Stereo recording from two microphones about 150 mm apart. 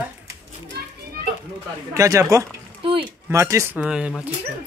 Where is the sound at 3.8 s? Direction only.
5° right (ahead or behind).